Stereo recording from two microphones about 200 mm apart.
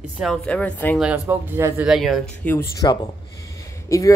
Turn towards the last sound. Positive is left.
turn(degrees=15)  # may be behind; listen again after turning